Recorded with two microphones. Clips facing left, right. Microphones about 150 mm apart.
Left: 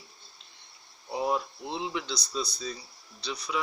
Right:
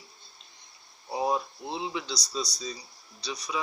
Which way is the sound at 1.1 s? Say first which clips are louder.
Right 1 dB; 10° right (ahead or behind).